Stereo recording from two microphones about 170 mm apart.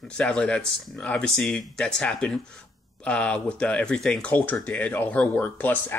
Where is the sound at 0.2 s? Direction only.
5° left (ahead or behind).